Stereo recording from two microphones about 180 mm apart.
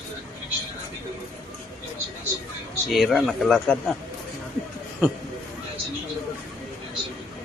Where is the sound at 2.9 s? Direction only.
Centre (ahead or behind).